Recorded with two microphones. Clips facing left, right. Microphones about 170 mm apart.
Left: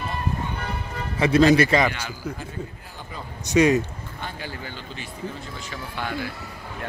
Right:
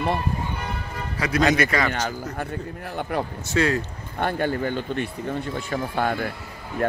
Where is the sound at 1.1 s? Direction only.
25° left (ahead or behind).